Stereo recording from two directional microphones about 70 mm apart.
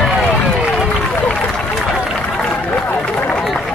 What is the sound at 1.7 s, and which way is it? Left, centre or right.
Run, centre.